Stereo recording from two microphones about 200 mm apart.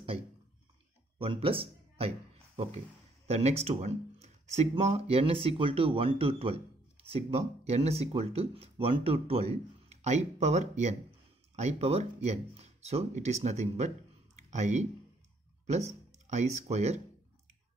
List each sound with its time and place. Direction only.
1.1 s speech: 25° right (ahead or behind)